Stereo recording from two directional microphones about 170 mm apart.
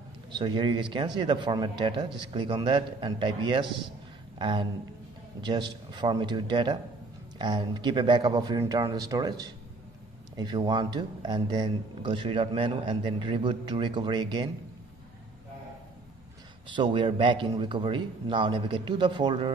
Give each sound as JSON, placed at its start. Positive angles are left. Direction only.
{"t": 0.3, "sound": "speech", "side_deg": -30}
{"t": 4.4, "sound": "a sound", "side_deg": -30}
{"t": 5.4, "sound": "speech", "side_deg": -25}
{"t": 16.7, "sound": "speech", "side_deg": -30}